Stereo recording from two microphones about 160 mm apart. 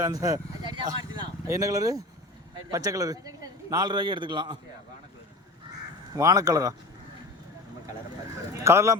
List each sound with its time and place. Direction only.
0.0 s speech: 25° right (ahead or behind)
6.1 s speech: 20° right (ahead or behind)
8.6 s speech: 20° right (ahead or behind)